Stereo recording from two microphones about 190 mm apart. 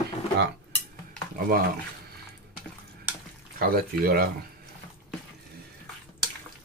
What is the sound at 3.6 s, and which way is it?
Speech, 50° right (ahead or behind).